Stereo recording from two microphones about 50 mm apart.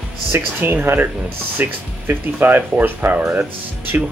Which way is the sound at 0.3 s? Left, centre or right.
Right.